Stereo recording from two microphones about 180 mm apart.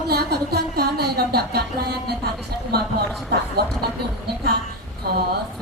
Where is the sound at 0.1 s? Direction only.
60° right (ahead or behind).